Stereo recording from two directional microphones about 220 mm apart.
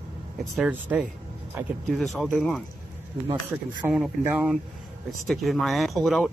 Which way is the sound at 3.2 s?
20° right (ahead or behind).